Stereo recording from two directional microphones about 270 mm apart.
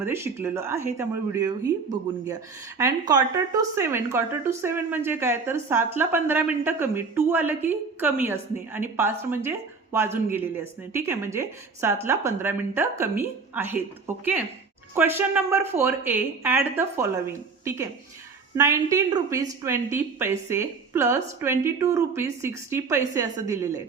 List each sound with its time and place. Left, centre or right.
0.0 s speech: centre
14.9 s speech: centre